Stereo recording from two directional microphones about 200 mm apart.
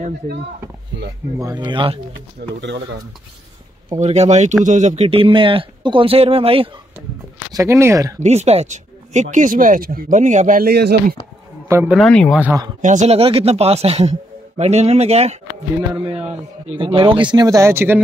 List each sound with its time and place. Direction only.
1.4 s speech: 20° right (ahead or behind)
2.6 s speech: 60° right (ahead or behind)
4.0 s speech: 35° right (ahead or behind)
7.5 s speech: 15° right (ahead or behind)
8.2 s speech: 30° right (ahead or behind); by 11.1 s 55° right (ahead or behind)
11.6 s a sound: 15° right (ahead or behind)
11.9 s speech: 5° left (ahead or behind)
12.8 s speech: 35° right (ahead or behind); by 18.0 s 10° right (ahead or behind)